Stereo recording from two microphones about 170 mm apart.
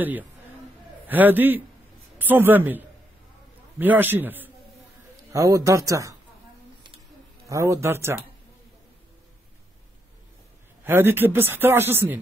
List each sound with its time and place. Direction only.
0.0 s a man's voice: 10° right (ahead or behind)
7.4 s speech: 20° right (ahead or behind)
10.8 s speech: 15° right (ahead or behind)